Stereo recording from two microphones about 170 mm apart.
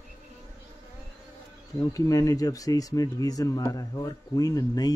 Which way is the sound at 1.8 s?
20° left (ahead or behind).